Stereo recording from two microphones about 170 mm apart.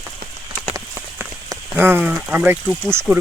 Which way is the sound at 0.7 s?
15° right (ahead or behind).